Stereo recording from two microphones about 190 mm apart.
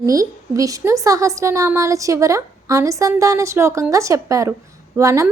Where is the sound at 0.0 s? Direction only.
15° right (ahead or behind).